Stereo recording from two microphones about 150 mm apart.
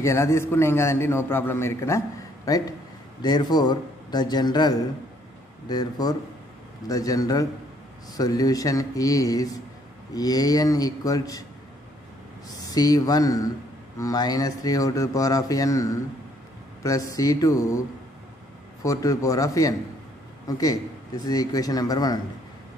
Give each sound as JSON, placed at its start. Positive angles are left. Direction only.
{"t": 0.0, "sound": "a man's voice", "side_deg": 20}
{"t": 12.4, "sound": "speech", "side_deg": 25}